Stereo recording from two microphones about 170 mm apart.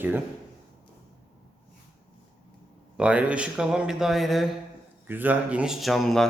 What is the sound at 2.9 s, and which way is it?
Speech, 5° right (ahead or behind).